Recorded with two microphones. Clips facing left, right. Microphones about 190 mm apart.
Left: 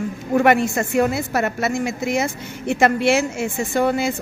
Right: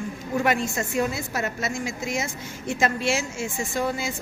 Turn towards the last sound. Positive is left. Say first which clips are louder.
# left 8 dB
turn(degrees=65)  # may be behind; listen again after turning